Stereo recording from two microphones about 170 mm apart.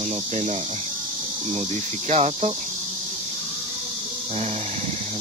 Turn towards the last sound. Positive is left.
turn(degrees=-40)  # may be behind; listen again after turning